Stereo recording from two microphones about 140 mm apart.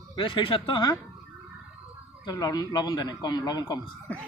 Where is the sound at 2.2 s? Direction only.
25° left (ahead or behind).